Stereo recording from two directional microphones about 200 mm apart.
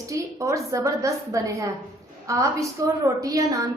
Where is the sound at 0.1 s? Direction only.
15° right (ahead or behind).